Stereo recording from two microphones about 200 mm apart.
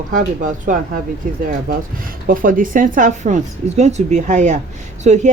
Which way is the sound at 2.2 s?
45° right (ahead or behind).